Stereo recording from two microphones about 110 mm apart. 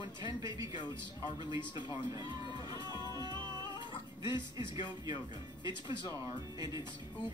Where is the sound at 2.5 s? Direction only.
40° left (ahead or behind).